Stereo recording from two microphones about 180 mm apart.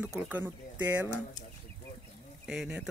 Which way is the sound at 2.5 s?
5° right (ahead or behind).